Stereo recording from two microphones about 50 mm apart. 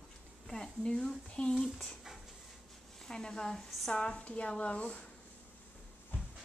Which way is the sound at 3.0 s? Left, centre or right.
Centre.